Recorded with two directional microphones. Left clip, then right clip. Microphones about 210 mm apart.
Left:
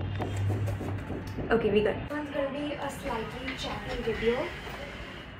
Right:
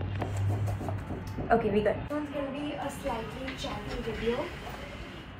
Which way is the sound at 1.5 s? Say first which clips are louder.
Left 1 dB; 20° left (ahead or behind).